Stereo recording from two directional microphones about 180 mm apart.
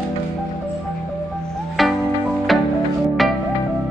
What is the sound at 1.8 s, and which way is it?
Music, centre (ahead or behind).